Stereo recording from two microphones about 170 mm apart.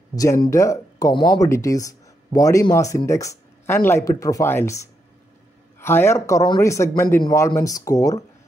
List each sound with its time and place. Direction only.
0.1 s a man's voice: 20° left (ahead or behind)